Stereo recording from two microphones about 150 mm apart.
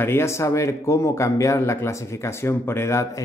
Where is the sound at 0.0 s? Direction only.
15° left (ahead or behind).